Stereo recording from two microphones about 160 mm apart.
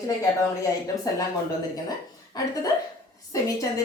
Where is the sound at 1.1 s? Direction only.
25° left (ahead or behind).